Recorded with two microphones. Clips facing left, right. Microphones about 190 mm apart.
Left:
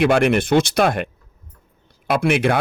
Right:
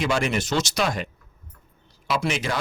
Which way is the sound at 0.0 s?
60° left (ahead or behind).